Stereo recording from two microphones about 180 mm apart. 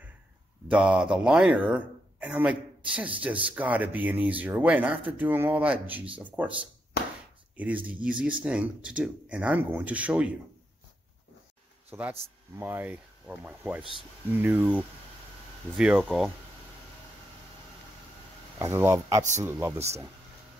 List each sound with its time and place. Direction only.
0.7 s speech: 5° right (ahead or behind)
7.5 s speech: 10° right (ahead or behind)
11.9 s speech: 10° right (ahead or behind)
18.6 s speech: 15° right (ahead or behind)